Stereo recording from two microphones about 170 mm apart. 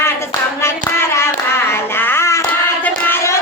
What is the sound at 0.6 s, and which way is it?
Child singing, 15° left (ahead or behind).